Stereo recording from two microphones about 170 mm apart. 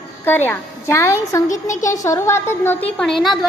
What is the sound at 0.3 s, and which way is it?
A woman's voice, 10° left (ahead or behind).